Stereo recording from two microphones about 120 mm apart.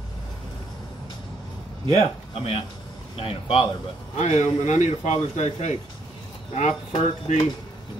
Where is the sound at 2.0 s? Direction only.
50° left (ahead or behind).